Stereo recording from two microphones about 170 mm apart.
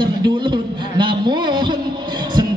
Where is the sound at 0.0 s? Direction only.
30° right (ahead or behind).